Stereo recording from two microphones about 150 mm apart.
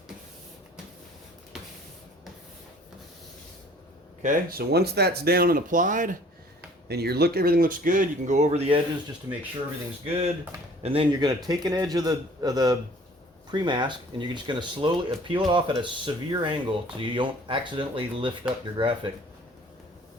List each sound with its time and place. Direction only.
4.2 s speech: 70° right (ahead or behind)
6.8 s speech: 90° right; by 8.8 s 45° right (ahead or behind)
10.8 s speech: 45° right (ahead or behind)
11.2 s a man's voice: 25° right (ahead or behind)